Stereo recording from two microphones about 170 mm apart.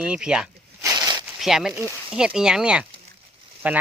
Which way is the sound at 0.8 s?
20° right (ahead or behind).